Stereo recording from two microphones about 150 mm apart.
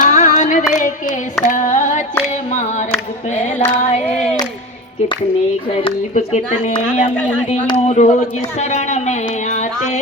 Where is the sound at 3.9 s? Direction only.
45° left (ahead or behind).